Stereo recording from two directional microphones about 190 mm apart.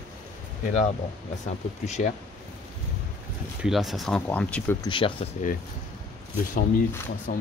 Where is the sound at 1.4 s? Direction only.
40° left (ahead or behind).